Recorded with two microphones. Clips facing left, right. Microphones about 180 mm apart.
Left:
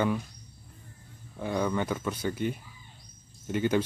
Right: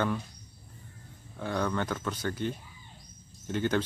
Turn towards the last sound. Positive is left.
turn(degrees=10)  # may be behind; listen again after turning